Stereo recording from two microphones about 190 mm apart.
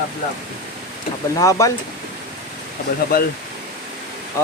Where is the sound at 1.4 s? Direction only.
15° left (ahead or behind).